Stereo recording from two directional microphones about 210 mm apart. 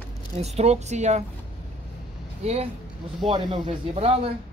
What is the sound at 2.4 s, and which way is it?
Speech, 30° right (ahead or behind).